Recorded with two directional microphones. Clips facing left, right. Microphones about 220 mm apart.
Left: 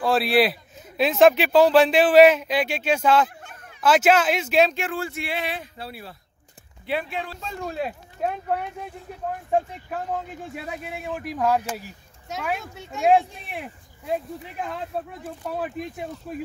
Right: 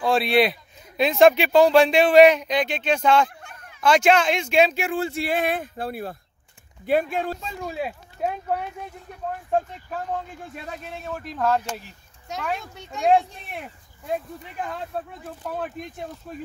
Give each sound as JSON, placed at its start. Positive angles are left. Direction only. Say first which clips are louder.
{"t": 0.0, "sound": "a man's voice", "louder": "even", "side_deg": 0}
{"t": 4.9, "sound": "speech", "louder": "right 4 dB", "side_deg": -25}
{"t": 5.2, "sound": "speech", "louder": "right 6 dB", "side_deg": -50}
{"t": 7.4, "sound": "speech", "louder": "left 1 dB", "side_deg": -5}
{"t": 10.5, "sound": "speech", "louder": "left 2 dB", "side_deg": 5}